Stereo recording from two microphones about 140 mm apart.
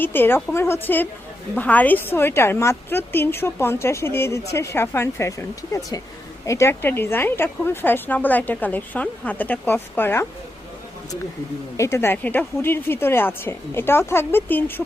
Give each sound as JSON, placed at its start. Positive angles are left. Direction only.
{"t": 0.0, "sound": "a woman's voice", "side_deg": 15}
{"t": 11.8, "sound": "a woman's voice", "side_deg": 20}